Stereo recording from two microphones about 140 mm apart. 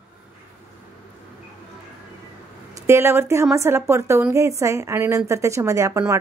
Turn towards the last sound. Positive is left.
turn(degrees=-20)  # may be behind; listen again after turning